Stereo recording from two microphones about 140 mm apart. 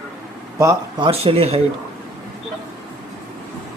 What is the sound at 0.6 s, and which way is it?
Speech, 30° right (ahead or behind).